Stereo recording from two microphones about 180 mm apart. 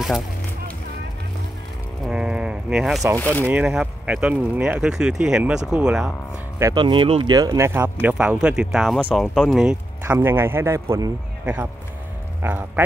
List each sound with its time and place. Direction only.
2.0 s a sound: 5° right (ahead or behind)
3.2 s speech: 10° left (ahead or behind)
3.4 s speech: 5° right (ahead or behind)
6.6 s speech: 25° right (ahead or behind)
7.3 s speech: 15° right (ahead or behind)